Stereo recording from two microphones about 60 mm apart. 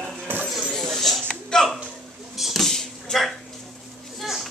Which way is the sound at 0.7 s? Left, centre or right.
Centre.